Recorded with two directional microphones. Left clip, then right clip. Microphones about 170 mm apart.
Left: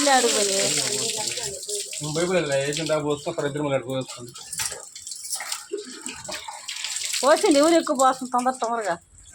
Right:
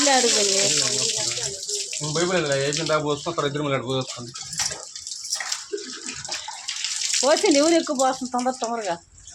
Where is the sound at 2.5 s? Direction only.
55° right (ahead or behind).